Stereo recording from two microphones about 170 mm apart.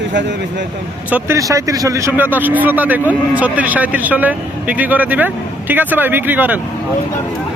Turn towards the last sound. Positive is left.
turn(degrees=-10)  # may be behind; listen again after turning